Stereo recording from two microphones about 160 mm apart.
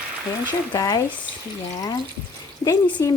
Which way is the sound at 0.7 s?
20° left (ahead or behind).